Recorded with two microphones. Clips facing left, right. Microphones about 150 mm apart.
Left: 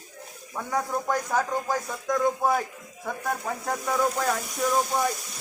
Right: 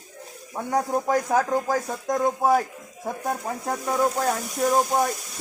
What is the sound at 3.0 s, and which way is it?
Speech, 30° right (ahead or behind).